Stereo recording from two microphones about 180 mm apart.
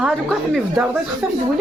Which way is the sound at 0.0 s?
Centre (ahead or behind).